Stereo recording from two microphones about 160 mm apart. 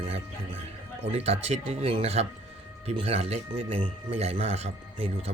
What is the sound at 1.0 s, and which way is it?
Speech, 40° right (ahead or behind).